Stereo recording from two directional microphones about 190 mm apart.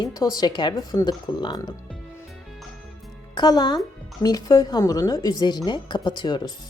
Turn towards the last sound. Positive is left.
turn(degrees=25)  # may be behind; listen again after turning